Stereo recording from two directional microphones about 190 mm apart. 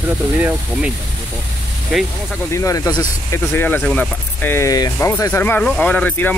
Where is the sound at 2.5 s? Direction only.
15° left (ahead or behind).